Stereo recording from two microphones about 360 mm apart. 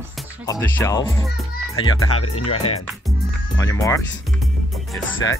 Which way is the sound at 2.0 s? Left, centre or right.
Left.